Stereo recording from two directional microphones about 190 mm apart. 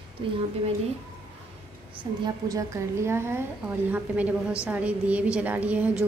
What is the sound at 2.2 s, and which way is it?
A woman's voice, 20° right (ahead or behind).